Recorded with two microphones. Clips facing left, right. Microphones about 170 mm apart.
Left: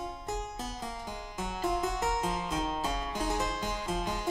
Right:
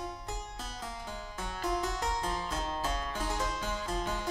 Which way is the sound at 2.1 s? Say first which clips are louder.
Left 3 dB; 20° left (ahead or behind).